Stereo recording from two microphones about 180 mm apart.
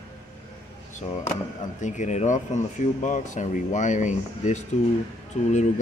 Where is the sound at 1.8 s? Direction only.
45° left (ahead or behind).